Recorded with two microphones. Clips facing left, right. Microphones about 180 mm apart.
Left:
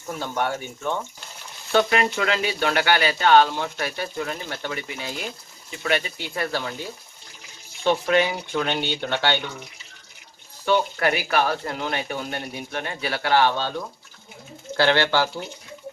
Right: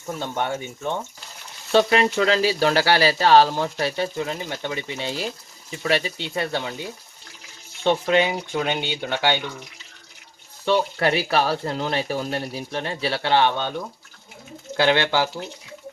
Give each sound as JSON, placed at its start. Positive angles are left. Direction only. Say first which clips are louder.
{"t": 0.2, "sound": "speech", "louder": "left 1 dB", "side_deg": -20}
{"t": 7.9, "sound": "speech", "louder": "right 1 dB", "side_deg": -20}
{"t": 11.0, "sound": "speech", "louder": "right 1 dB", "side_deg": -30}